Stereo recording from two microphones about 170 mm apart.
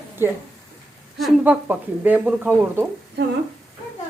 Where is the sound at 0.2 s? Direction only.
15° right (ahead or behind).